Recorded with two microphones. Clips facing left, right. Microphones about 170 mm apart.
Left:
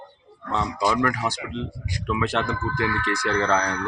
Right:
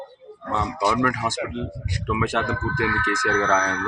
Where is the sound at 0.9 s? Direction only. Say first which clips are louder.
Right 1 dB; 10° right (ahead or behind).